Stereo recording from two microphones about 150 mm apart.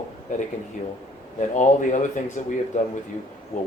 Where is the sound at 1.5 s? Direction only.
55° left (ahead or behind).